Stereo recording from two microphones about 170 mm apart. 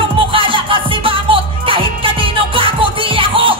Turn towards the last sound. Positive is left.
turn(degrees=-30)  # may be behind; listen again after turning